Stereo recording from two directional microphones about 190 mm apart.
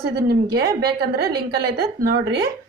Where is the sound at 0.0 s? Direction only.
55° right (ahead or behind).